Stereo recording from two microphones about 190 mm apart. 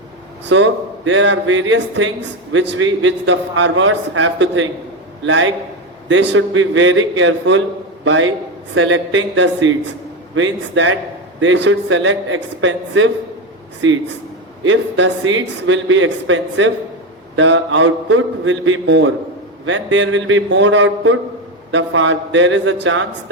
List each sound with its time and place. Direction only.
0.5 s a man's voice: 80° right
6.1 s a man's voice: 75° right (ahead or behind); by 23.0 s 90° right